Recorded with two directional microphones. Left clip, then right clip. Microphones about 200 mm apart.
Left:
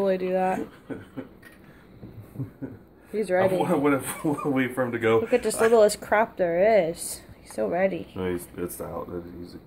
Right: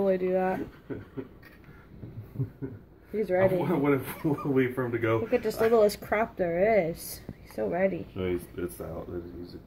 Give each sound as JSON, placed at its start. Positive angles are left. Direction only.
{"t": 0.0, "sound": "speech", "side_deg": 5}
{"t": 3.1, "sound": "speech", "side_deg": 0}
{"t": 3.5, "sound": "speech", "side_deg": 45}
{"t": 5.3, "sound": "speech", "side_deg": 0}
{"t": 8.2, "sound": "speech", "side_deg": 45}